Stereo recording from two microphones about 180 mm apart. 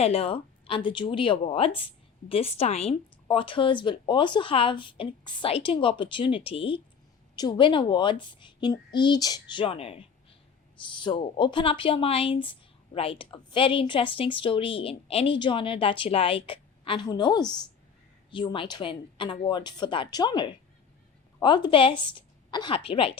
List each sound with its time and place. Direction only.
0.0 s speech: 35° left (ahead or behind)